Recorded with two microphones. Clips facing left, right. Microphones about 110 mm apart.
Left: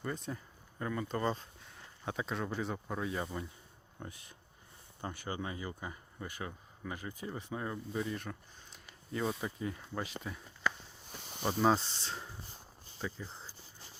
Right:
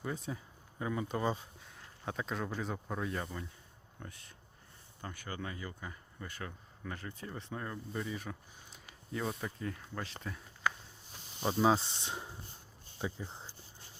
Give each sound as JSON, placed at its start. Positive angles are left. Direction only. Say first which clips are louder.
{"t": 0.0, "sound": "speech", "louder": "even", "side_deg": -5}
{"t": 4.0, "sound": "speech", "louder": "left 3 dB", "side_deg": 20}
{"t": 11.2, "sound": "snake", "louder": "left 2 dB", "side_deg": 65}
{"t": 11.4, "sound": "speech", "louder": "even", "side_deg": -5}